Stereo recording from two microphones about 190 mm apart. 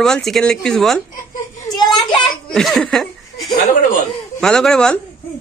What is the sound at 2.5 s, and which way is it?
Speech, centre (ahead or behind).